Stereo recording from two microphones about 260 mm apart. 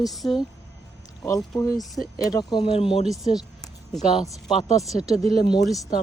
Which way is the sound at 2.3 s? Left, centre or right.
Centre.